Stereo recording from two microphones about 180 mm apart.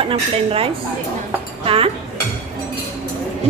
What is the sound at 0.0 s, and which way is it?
A woman's voice, 30° right (ahead or behind).